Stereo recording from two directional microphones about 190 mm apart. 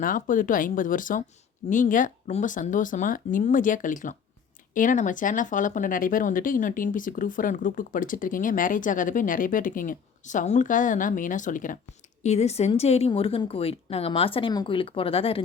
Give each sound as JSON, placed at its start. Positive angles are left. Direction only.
{"t": 0.0, "sound": "speech", "side_deg": 45}